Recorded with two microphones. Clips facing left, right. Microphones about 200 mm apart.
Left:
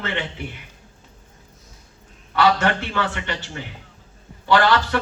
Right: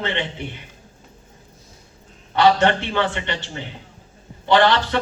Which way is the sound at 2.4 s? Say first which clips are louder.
Right 3 dB; 30° right (ahead or behind).